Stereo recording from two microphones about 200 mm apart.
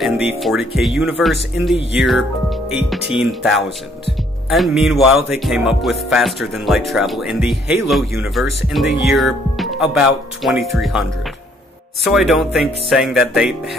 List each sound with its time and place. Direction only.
0.0 s music: 5° right (ahead or behind)
1.8 s speech: 60° left (ahead or behind)
3.2 s music: centre (ahead or behind)